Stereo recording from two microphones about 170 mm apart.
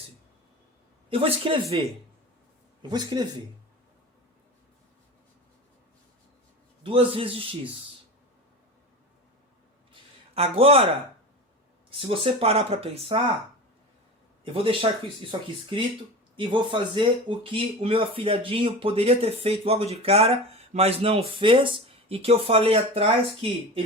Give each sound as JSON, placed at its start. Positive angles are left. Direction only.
{"t": 1.1, "sound": "speech", "side_deg": -35}
{"t": 2.9, "sound": "speech", "side_deg": -25}
{"t": 6.8, "sound": "speech", "side_deg": -30}
{"t": 10.3, "sound": "speech", "side_deg": -35}
{"t": 11.9, "sound": "speech", "side_deg": -30}
{"t": 14.5, "sound": "speech", "side_deg": -30}